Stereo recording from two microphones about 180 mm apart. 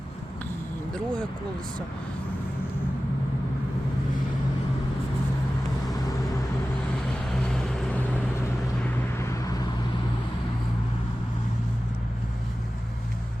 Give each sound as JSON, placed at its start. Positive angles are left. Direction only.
{"t": 0.9, "sound": "speech", "side_deg": 5}
{"t": 7.3, "sound": "vehicle", "side_deg": 5}